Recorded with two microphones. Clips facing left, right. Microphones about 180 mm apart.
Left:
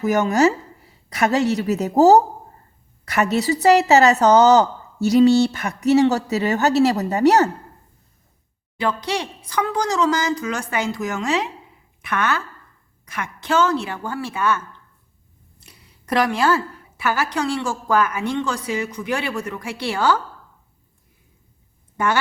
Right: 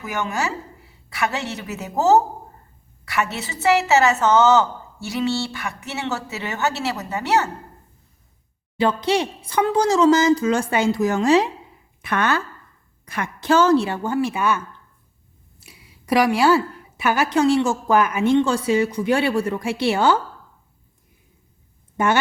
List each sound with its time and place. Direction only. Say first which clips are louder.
0.0 s speech: left 9 dB; 40° left (ahead or behind)
3.3 s speech: left 5 dB; 35° left (ahead or behind)
8.8 s a woman's voice: right 4 dB; 25° right (ahead or behind)
15.6 s a woman's voice: right 2 dB; 10° right (ahead or behind)
21.9 s a woman's voice: right 2 dB; 20° right (ahead or behind)